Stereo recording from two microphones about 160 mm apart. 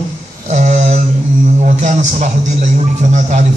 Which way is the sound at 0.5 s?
50° right (ahead or behind).